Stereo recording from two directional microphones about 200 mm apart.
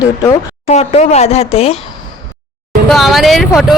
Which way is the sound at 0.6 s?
30° left (ahead or behind).